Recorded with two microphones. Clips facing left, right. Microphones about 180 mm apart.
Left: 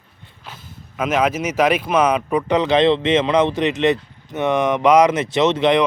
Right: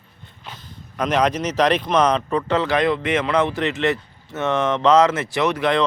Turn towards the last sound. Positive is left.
turn(degrees=20)  # may be behind; listen again after turning